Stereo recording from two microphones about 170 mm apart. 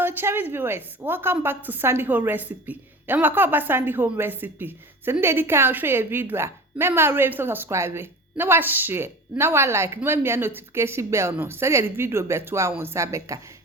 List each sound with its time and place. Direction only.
0.0 s a woman's voice: 15° right (ahead or behind)